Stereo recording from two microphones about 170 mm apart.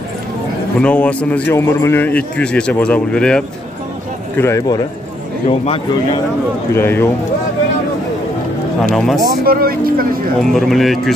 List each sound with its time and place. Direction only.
0.7 s a man's voice: 5° left (ahead or behind)
4.4 s a man's voice: 15° left (ahead or behind)
5.5 s a man's voice: 35° left (ahead or behind)
6.7 s a man's voice: 15° left (ahead or behind)
8.9 s speech: centre (ahead or behind)
9.2 s speech: 60° right (ahead or behind)
10.5 s speech: centre (ahead or behind)